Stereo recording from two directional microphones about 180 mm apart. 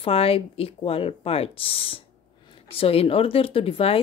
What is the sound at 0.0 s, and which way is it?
A woman's voice, 30° left (ahead or behind).